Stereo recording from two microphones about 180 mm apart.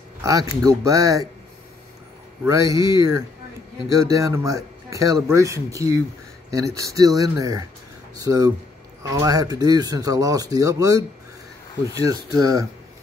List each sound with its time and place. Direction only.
0.2 s speech: 20° right (ahead or behind)
2.4 s speech: 15° right (ahead or behind)